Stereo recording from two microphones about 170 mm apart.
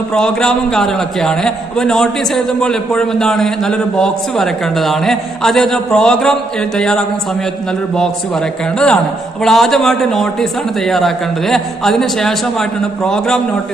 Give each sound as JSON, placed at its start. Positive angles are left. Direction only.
{"t": 0.1, "sound": "a man's voice", "side_deg": 5}
{"t": 8.7, "sound": "a man's voice", "side_deg": 5}